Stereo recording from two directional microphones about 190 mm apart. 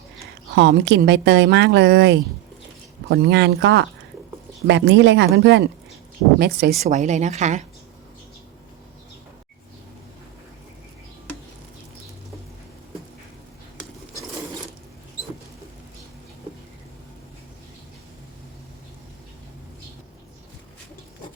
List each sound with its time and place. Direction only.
0.5 s a woman's voice: 65° right (ahead or behind)
6.4 s speech: 55° right (ahead or behind)
6.8 s a woman's voice: 40° right (ahead or behind)